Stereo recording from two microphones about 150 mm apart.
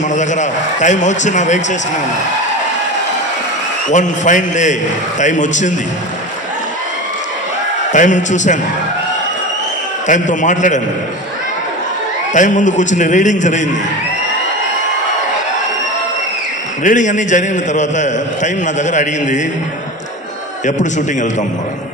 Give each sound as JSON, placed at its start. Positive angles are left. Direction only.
{"t": 0.1, "sound": "a man's voice", "side_deg": 55}
{"t": 3.9, "sound": "a man's voice", "side_deg": 55}
{"t": 7.9, "sound": "a man's voice", "side_deg": 55}
{"t": 10.0, "sound": "a man's voice", "side_deg": 55}
{"t": 12.4, "sound": "a man's voice", "side_deg": 55}
{"t": 16.8, "sound": "a man's voice", "side_deg": 55}
{"t": 20.6, "sound": "a man's voice", "side_deg": 55}